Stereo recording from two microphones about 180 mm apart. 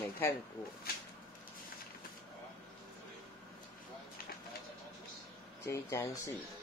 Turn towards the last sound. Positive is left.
turn(degrees=15)  # may be behind; listen again after turning